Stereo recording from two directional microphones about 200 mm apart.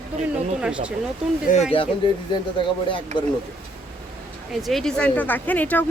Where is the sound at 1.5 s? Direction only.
40° left (ahead or behind).